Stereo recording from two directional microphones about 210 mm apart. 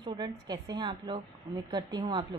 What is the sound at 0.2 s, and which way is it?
A woman's voice, 20° right (ahead or behind).